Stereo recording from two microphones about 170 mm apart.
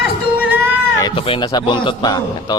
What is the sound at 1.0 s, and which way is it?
Speech, 30° left (ahead or behind).